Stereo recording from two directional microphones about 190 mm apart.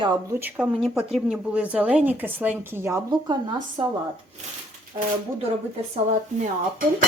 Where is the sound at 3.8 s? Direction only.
30° right (ahead or behind).